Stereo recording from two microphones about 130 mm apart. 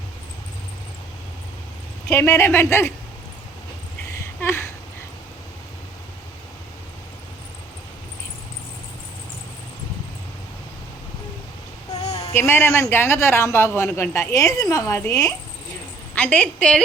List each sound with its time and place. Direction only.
2.0 s a man's voice: 20° left (ahead or behind)
4.2 s a sound: 20° left (ahead or behind)
12.2 s a man's voice: 20° left (ahead or behind)
16.1 s a woman's voice: 10° left (ahead or behind)